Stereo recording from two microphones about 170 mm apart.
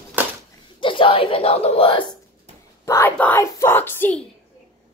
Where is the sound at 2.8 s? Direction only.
15° left (ahead or behind).